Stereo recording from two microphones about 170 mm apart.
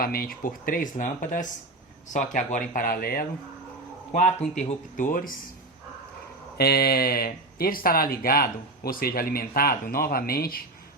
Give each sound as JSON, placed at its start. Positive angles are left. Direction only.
{"t": 0.0, "sound": "speech", "side_deg": 60}
{"t": 4.7, "sound": "speech", "side_deg": 50}
{"t": 6.6, "sound": "speech", "side_deg": 65}